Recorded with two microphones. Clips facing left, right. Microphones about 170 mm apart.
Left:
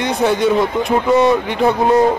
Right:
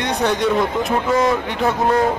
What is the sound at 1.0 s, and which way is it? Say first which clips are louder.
Speech: left 5 dB; 20° left (ahead or behind).